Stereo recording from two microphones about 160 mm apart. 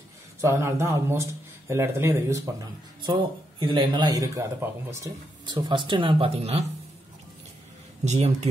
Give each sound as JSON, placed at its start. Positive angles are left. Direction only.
{"t": 0.4, "sound": "speech", "side_deg": -15}
{"t": 3.1, "sound": "speech", "side_deg": -30}
{"t": 5.4, "sound": "speech", "side_deg": -30}
{"t": 8.0, "sound": "speech", "side_deg": -45}